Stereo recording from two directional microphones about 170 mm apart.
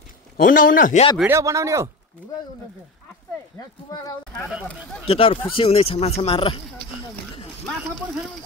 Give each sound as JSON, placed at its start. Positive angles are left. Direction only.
{"t": 0.4, "sound": "a man's voice", "side_deg": 55}
{"t": 1.2, "sound": "speech", "side_deg": -15}
{"t": 5.0, "sound": "speech", "side_deg": 35}